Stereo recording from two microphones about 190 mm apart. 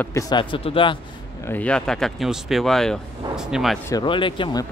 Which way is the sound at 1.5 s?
5° left (ahead or behind).